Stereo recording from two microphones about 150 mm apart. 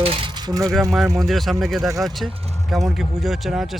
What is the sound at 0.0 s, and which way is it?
Pulleys, 40° right (ahead or behind).